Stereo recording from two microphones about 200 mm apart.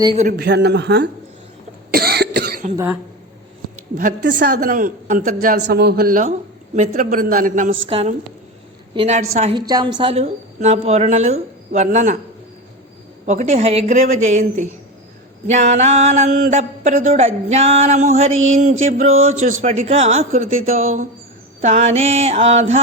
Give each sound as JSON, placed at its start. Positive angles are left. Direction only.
{"t": 0.3, "sound": "speech", "side_deg": -55}
{"t": 1.9, "sound": "cough", "side_deg": -50}
{"t": 2.7, "sound": "speech", "side_deg": -10}
{"t": 4.3, "sound": "a woman's voice", "side_deg": -40}
{"t": 5.6, "sound": "a man's voice", "side_deg": -55}
{"t": 6.7, "sound": "a woman's voice", "side_deg": -35}
{"t": 7.9, "sound": "a woman's voice", "side_deg": -30}
{"t": 13.2, "sound": "a woman's voice", "side_deg": -35}